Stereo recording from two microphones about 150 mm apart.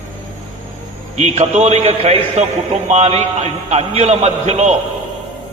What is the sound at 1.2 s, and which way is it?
A man's voice, 50° right (ahead or behind).